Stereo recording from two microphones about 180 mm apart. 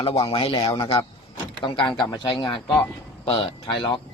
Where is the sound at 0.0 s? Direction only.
30° left (ahead or behind).